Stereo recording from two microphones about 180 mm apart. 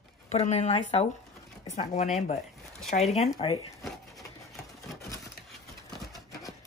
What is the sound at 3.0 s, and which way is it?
Speech, 35° left (ahead or behind).